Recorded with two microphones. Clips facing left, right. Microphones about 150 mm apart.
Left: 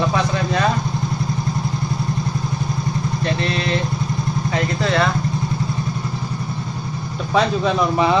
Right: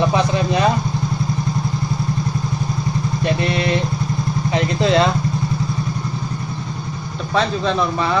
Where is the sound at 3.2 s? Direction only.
15° right (ahead or behind).